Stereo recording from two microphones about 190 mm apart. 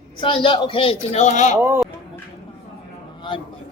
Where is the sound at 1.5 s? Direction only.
10° right (ahead or behind).